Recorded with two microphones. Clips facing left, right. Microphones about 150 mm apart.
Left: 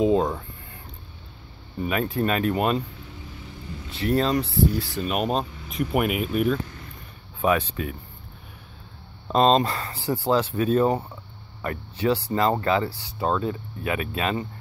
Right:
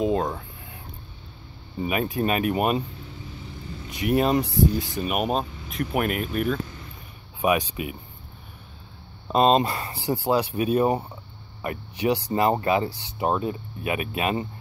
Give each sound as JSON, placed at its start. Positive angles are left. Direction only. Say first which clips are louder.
{"t": 0.0, "sound": "speech", "louder": "left 3 dB", "side_deg": 0}
{"t": 1.8, "sound": "speech", "louder": "even", "side_deg": -10}
{"t": 3.9, "sound": "speech", "louder": "right 1 dB", "side_deg": -15}
{"t": 5.1, "sound": "speech", "louder": "even", "side_deg": -5}
{"t": 7.4, "sound": "speech", "louder": "even", "side_deg": -15}
{"t": 9.3, "sound": "speech", "louder": "even", "side_deg": -10}